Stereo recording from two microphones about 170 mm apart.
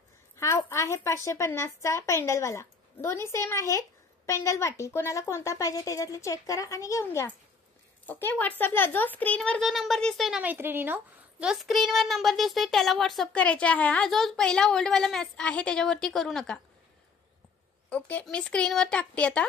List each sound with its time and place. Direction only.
0.4 s a woman's voice: 15° left (ahead or behind)
17.8 s speech: 10° left (ahead or behind)